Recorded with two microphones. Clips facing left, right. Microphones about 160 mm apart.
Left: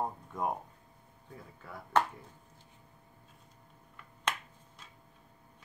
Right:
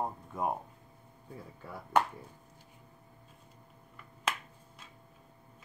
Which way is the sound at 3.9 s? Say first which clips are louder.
Even; 5° right (ahead or behind).